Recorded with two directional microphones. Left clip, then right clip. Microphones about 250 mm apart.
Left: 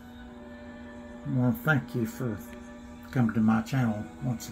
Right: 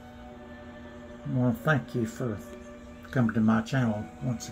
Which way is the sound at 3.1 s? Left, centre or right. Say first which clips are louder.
Right 1 dB; centre.